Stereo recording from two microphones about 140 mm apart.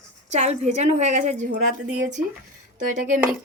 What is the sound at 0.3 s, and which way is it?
A woman's voice, 55° right (ahead or behind).